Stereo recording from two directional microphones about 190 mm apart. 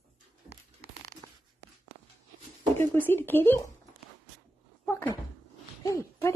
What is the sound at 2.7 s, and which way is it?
Speech, 10° left (ahead or behind).